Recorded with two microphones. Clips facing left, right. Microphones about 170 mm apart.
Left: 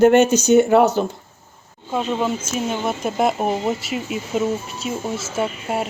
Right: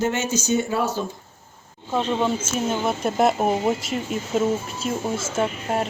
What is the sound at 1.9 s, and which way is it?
Speech, 5° left (ahead or behind).